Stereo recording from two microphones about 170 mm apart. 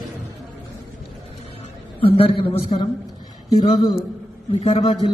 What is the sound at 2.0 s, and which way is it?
A man's voice, 35° left (ahead or behind).